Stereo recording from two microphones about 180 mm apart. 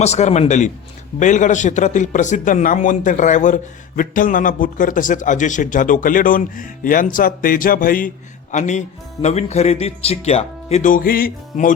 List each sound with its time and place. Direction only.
0.0 s a man's voice: 40° left (ahead or behind)